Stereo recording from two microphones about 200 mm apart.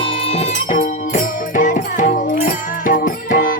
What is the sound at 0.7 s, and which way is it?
Music, 40° left (ahead or behind).